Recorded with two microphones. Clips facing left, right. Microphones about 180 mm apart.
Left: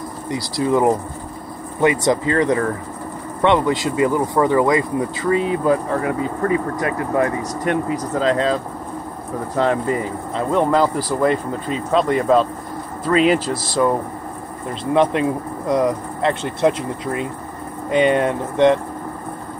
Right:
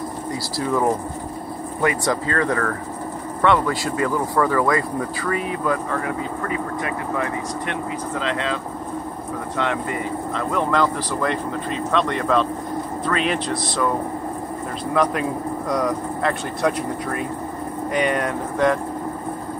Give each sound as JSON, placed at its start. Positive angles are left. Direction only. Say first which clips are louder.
{"t": 0.3, "sound": "speech", "louder": "left 5 dB", "side_deg": 20}
{"t": 9.6, "sound": "speech", "louder": "left 6 dB", "side_deg": 35}
{"t": 15.0, "sound": "speech", "louder": "left 4 dB", "side_deg": 25}